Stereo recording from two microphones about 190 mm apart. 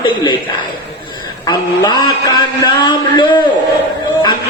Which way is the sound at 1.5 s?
20° left (ahead or behind).